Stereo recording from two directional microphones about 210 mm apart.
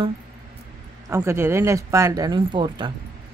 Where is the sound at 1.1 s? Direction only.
15° right (ahead or behind).